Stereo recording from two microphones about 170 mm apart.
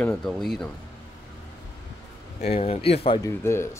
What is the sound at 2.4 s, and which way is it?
Speech, 35° left (ahead or behind).